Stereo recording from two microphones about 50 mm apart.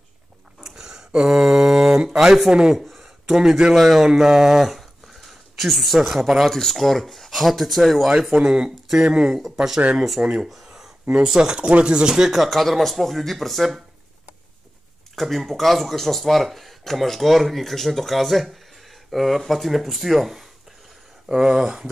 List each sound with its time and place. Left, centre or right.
0.6 s a sound: centre
2.7 s speech: centre
8.1 s speech: centre
10.2 s speech: centre
10.5 s a sound: centre
11.2 s speech: centre
15.1 s speech: centre